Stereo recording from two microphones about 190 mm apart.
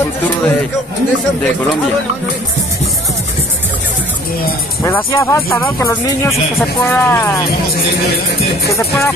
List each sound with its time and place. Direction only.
4.8 s speech: 15° left (ahead or behind)
8.6 s speech: 15° left (ahead or behind)